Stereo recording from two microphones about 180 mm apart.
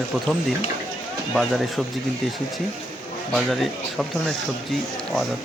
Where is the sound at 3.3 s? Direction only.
Centre (ahead or behind).